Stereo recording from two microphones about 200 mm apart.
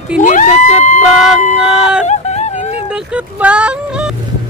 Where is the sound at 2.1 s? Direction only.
35° left (ahead or behind).